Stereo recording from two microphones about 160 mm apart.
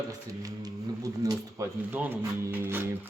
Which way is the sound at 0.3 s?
20° right (ahead or behind).